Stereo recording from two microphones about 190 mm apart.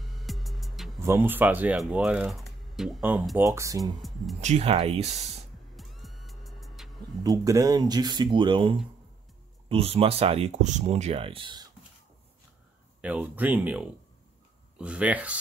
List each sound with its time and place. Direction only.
0.0 s music: centre (ahead or behind)
1.0 s speech: 10° right (ahead or behind)
3.3 s speech: 15° right (ahead or behind)
4.4 s speech: 35° right (ahead or behind)
5.8 s music: centre (ahead or behind)
7.2 s speech: 20° right (ahead or behind)
13.0 s speech: 10° right (ahead or behind)